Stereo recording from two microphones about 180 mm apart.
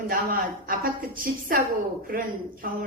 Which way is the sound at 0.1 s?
50° right (ahead or behind).